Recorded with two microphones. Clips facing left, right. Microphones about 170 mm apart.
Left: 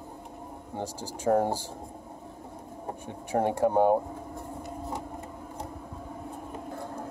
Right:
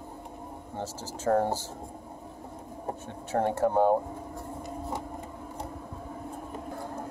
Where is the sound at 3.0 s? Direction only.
15° left (ahead or behind).